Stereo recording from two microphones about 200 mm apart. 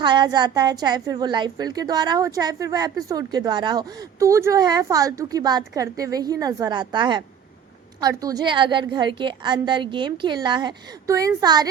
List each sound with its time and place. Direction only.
0.0 s a woman's voice: 25° right (ahead or behind)